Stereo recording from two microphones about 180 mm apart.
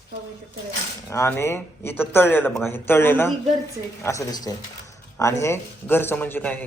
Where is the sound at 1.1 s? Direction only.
15° left (ahead or behind).